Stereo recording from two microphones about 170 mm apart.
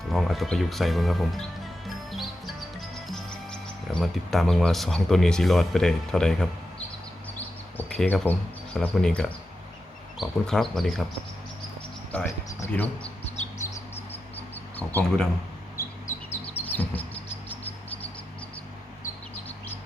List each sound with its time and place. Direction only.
0.1 s speech: centre (ahead or behind)
2.9 s speech: centre (ahead or behind)
7.3 s a sound: 10° left (ahead or behind)
8.3 s speech: 5° left (ahead or behind)
12.1 s speech: 10° left (ahead or behind)
14.8 s speech: 10° left (ahead or behind)
15.8 s bird: 15° left (ahead or behind)
16.3 s chirp: 10° left (ahead or behind)
17.5 s a sound: 10° left (ahead or behind)